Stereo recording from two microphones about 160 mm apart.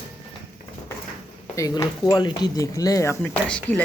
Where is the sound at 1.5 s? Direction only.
25° left (ahead or behind).